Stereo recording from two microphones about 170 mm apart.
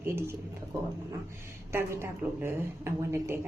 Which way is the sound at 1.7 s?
15° right (ahead or behind).